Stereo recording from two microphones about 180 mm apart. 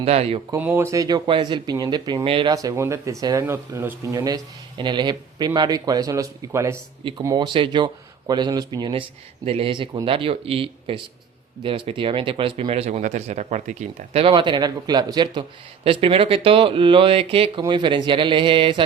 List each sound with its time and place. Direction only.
0.0 s speech: 35° right (ahead or behind)
0.5 s speech: 10° right (ahead or behind); by 18.8 s 30° right (ahead or behind)